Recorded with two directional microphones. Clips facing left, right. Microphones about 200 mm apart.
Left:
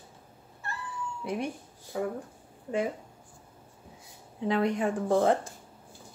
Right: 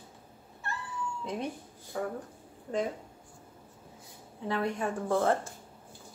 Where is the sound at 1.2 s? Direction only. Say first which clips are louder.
Left 5 dB; 15° left (ahead or behind).